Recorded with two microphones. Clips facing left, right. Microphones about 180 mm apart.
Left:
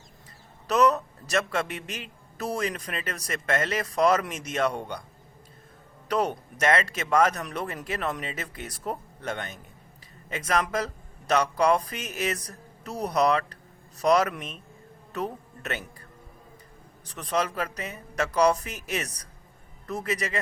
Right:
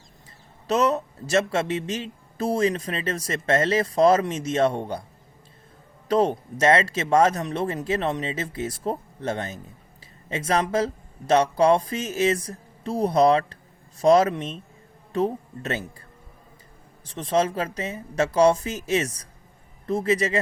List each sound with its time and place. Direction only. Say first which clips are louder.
0.7 s speech: even; 25° right (ahead or behind)
6.1 s speech: right 6 dB; 25° right (ahead or behind)
17.1 s speech: right 5 dB; 25° right (ahead or behind)